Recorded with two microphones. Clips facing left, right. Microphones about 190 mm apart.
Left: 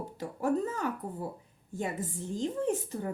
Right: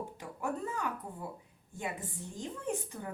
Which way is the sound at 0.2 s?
40° left (ahead or behind).